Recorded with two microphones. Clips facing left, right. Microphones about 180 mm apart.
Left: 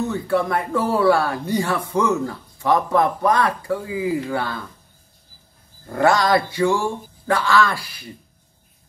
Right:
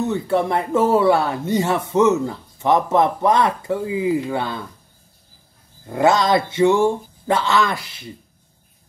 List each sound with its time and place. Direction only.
0.1 s speech: 25° right (ahead or behind)
5.9 s speech: 20° right (ahead or behind)